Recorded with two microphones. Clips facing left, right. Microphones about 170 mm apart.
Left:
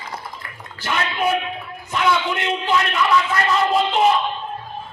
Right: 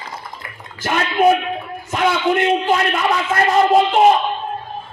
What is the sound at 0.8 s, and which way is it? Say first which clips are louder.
Bathtub: right 7 dB; 45° right (ahead or behind).